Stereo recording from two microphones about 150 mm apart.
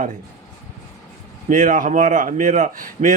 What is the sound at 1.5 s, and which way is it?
Speech, 60° right (ahead or behind).